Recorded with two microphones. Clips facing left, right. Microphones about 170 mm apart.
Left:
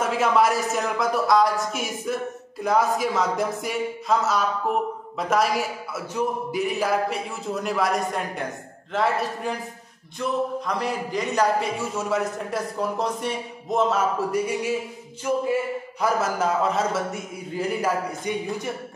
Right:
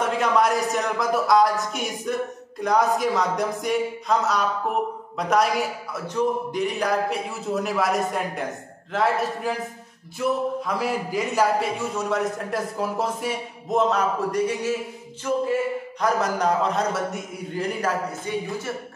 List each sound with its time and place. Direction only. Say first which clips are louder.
0.0 s a man's voice: left 1 dB; 5° left (ahead or behind)
18.3 s speech: even; 15° left (ahead or behind)